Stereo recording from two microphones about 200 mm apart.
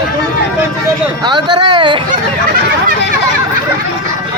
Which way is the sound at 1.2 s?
20° right (ahead or behind).